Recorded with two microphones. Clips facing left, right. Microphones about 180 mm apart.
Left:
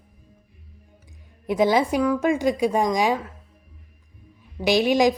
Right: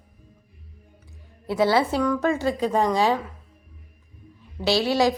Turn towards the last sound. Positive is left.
turn(degrees=15)  # may be behind; listen again after turning